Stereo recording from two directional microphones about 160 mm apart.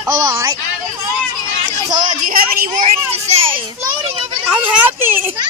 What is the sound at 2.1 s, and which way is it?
Speech, 60° right (ahead or behind).